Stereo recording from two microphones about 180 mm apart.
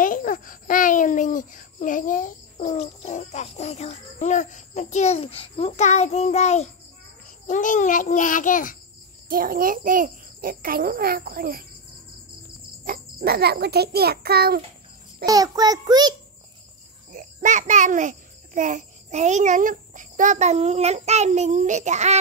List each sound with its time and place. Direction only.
0.0 s babbling: 50° left (ahead or behind)
7.4 s child singing: 45° left (ahead or behind)
9.3 s a sound: 50° right (ahead or behind)
12.8 s a sound: 55° right (ahead or behind)
15.2 s child singing: 20° right (ahead or behind)
17.1 s a child's voice: 45° right (ahead or behind)